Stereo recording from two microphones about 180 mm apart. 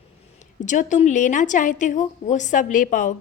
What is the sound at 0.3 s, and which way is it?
A woman's voice, 45° left (ahead or behind).